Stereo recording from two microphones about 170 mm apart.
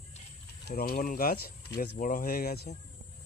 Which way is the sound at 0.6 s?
60° left (ahead or behind).